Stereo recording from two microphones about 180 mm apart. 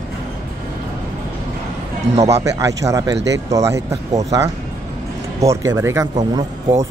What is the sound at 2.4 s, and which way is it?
Speech, 15° right (ahead or behind).